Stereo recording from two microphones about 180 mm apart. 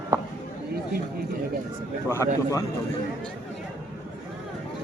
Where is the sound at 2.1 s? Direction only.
15° left (ahead or behind).